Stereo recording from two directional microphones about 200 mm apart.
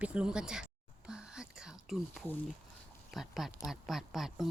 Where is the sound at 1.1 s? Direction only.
5° right (ahead or behind).